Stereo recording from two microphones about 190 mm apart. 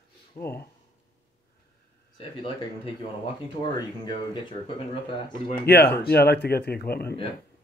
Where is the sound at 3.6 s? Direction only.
25° left (ahead or behind).